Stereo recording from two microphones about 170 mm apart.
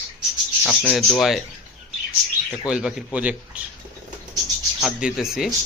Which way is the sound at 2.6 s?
5° right (ahead or behind).